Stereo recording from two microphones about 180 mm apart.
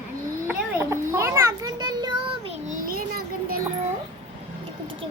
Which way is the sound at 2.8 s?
55° right (ahead or behind).